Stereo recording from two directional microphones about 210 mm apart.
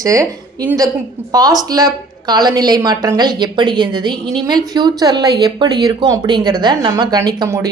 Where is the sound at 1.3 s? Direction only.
15° right (ahead or behind).